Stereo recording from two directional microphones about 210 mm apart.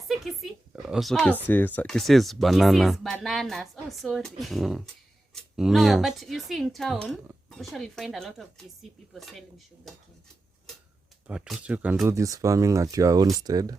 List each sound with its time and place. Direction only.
0.1 s speech: centre (ahead or behind)
11.3 s speech: centre (ahead or behind); by 13.7 s 20° right (ahead or behind)